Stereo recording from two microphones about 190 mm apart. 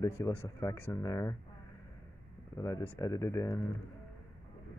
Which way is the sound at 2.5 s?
15° left (ahead or behind).